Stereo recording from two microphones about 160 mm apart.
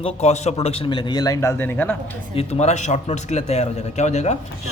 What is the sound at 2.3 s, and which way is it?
Speech, 40° left (ahead or behind).